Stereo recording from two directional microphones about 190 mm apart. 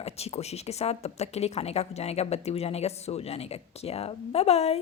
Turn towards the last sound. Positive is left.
turn(degrees=35)  # may be behind; listen again after turning